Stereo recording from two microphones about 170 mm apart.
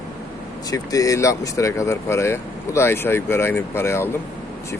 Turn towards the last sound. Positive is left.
turn(degrees=15)  # may be behind; listen again after turning